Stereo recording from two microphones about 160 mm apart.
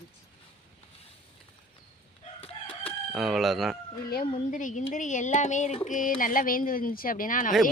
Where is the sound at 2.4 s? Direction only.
35° left (ahead or behind).